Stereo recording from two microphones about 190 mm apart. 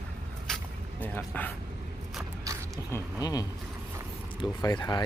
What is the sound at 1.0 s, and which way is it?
Speech, 10° left (ahead or behind).